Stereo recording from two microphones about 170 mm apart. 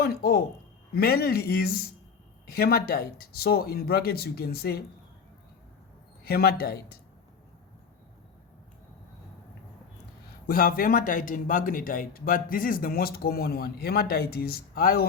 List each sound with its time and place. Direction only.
0.0 s a man's voice: 65° left (ahead or behind)
6.2 s a man's voice: 65° left (ahead or behind)
10.4 s a man's voice: 60° left (ahead or behind)